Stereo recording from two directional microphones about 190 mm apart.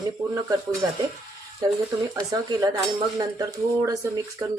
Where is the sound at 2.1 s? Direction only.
20° right (ahead or behind).